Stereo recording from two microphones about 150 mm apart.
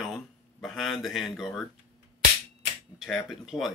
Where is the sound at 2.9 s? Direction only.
Centre (ahead or behind).